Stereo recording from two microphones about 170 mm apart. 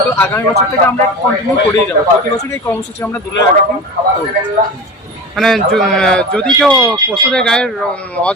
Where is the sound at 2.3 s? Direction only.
15° left (ahead or behind).